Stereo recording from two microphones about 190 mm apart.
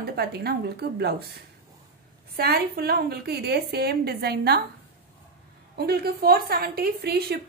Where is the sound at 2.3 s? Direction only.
55° right (ahead or behind).